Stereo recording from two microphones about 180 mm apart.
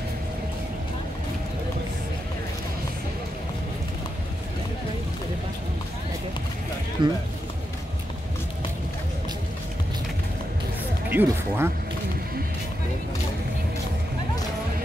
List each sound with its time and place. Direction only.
7.0 s speech: 25° right (ahead or behind)
11.1 s music: 10° right (ahead or behind)